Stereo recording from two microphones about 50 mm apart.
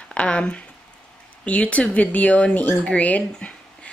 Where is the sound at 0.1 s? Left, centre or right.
Centre.